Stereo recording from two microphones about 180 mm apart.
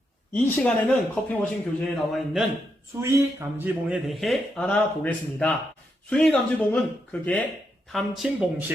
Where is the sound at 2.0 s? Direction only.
Centre (ahead or behind).